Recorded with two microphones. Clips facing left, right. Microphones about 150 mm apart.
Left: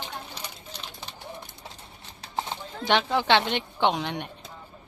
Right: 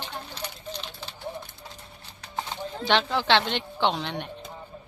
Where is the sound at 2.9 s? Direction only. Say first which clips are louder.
Left 1 dB; 10° left (ahead or behind).